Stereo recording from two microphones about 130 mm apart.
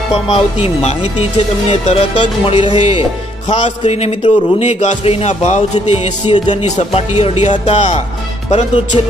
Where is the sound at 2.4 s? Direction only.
40° left (ahead or behind).